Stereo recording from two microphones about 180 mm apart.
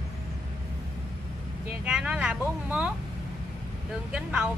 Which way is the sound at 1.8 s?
5° right (ahead or behind).